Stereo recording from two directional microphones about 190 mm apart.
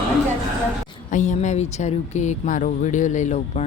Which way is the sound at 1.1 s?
40° left (ahead or behind).